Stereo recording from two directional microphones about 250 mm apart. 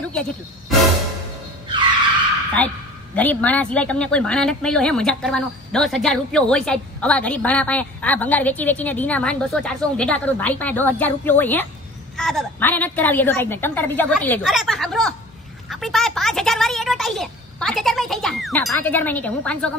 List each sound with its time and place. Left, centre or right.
0.1 s speech: centre
1.7 s skidding: centre
3.2 s a woman's voice: centre